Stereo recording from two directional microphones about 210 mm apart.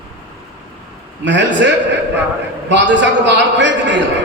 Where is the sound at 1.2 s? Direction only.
60° right (ahead or behind).